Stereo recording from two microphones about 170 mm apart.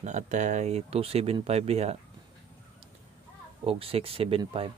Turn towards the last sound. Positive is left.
turn(degrees=-35)  # may be behind; listen again after turning